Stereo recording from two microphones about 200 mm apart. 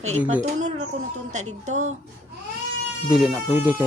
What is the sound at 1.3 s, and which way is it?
Speech, 35° right (ahead or behind).